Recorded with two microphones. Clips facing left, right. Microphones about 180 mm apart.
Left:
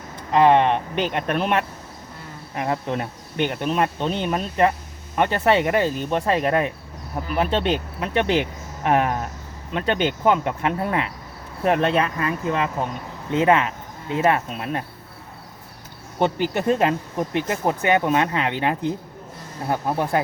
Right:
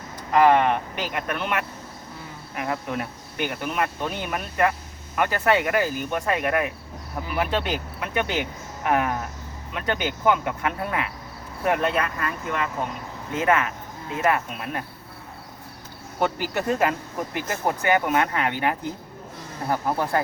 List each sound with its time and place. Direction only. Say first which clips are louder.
0.3 s cricket: left 2 dB; 25° left (ahead or behind)
13.3 s speech: left 4 dB; 30° left (ahead or behind)
16.2 s cricket: left 4 dB; 25° left (ahead or behind)